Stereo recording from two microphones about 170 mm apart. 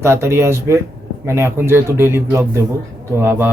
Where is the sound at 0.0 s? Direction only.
15° right (ahead or behind).